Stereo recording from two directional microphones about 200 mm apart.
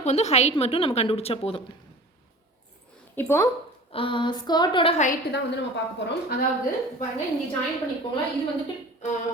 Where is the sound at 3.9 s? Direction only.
25° left (ahead or behind).